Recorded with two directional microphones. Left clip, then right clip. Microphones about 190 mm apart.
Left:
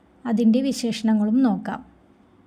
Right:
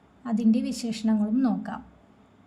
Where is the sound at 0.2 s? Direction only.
30° left (ahead or behind).